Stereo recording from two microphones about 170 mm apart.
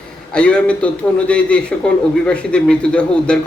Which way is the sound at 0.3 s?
5° left (ahead or behind).